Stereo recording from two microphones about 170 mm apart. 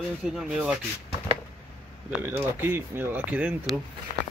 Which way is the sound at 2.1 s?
10° right (ahead or behind).